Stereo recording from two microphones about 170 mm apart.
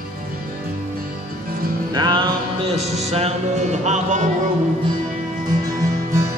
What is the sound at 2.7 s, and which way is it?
Music, 40° right (ahead or behind).